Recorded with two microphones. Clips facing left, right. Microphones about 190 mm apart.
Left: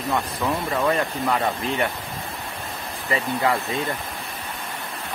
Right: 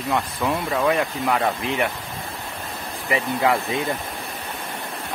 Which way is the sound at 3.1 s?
15° right (ahead or behind).